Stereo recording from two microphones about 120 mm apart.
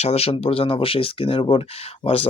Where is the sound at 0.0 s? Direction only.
60° left (ahead or behind).